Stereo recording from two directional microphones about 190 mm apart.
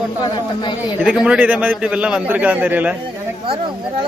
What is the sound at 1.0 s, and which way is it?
A man's voice, 5° right (ahead or behind).